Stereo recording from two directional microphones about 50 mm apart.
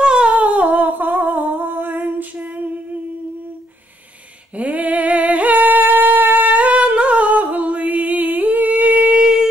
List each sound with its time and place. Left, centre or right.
0.0 s humming: centre
4.6 s humming: right
9.2 s shofar: centre